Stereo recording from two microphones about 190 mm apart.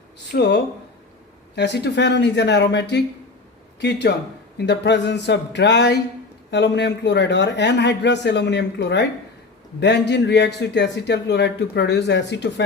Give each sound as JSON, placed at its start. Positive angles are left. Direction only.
{"t": 0.3, "sound": "a man's voice", "side_deg": 60}